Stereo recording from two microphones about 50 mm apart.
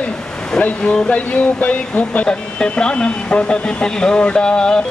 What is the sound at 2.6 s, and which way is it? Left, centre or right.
A man's voice, centre.